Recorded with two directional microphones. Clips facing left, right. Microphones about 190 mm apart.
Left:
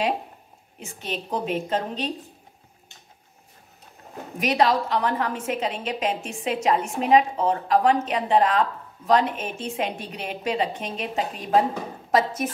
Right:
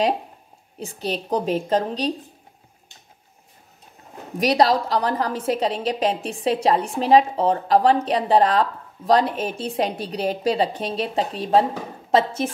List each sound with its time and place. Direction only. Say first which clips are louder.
0.7 s a woman's voice: right 5 dB; 35° right (ahead or behind)
4.4 s a woman's voice: right 3 dB; 35° right (ahead or behind)